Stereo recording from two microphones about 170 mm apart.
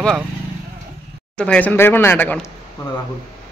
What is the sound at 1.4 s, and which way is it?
Speech, 10° left (ahead or behind).